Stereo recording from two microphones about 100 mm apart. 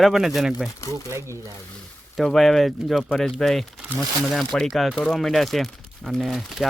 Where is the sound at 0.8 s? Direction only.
30° left (ahead or behind).